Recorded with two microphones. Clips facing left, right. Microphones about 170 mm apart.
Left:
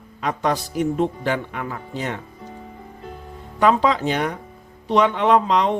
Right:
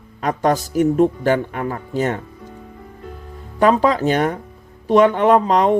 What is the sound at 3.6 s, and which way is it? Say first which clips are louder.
Speech: right 3 dB; 45° right (ahead or behind).